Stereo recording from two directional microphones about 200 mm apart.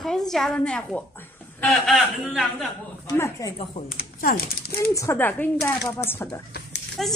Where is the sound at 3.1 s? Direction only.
15° left (ahead or behind).